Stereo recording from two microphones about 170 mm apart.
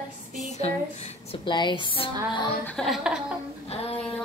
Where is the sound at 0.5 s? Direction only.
40° left (ahead or behind).